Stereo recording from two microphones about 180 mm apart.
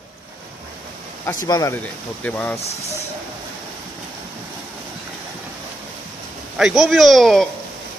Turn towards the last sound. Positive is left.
turn(degrees=0)  # may be behind; listen again after turning